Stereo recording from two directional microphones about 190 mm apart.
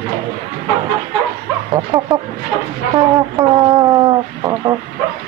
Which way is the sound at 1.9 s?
20° right (ahead or behind).